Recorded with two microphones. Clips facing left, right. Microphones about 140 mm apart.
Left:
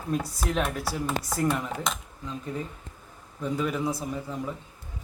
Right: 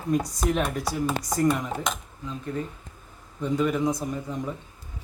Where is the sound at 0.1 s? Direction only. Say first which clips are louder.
Right 4 dB; 5° left (ahead or behind).